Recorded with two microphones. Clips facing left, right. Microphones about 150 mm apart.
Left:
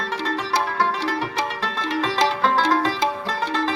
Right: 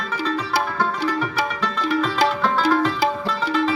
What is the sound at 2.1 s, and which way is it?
Music, 40° left (ahead or behind).